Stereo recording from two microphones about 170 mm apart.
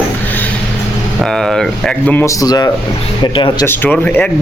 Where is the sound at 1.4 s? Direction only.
Centre (ahead or behind).